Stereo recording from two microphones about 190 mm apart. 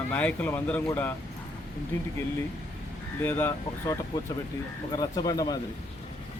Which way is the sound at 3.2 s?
10° left (ahead or behind).